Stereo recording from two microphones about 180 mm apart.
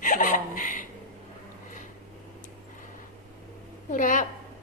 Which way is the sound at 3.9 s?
45° left (ahead or behind).